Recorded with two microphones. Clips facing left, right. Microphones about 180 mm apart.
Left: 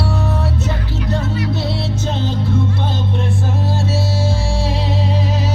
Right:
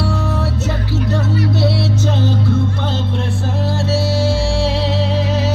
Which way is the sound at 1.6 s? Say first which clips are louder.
Right 5 dB; 75° right (ahead or behind).